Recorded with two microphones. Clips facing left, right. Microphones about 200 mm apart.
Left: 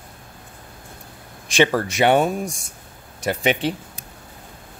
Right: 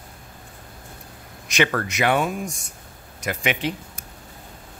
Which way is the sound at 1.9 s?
35° left (ahead or behind).